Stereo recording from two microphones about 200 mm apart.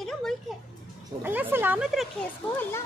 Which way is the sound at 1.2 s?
10° right (ahead or behind).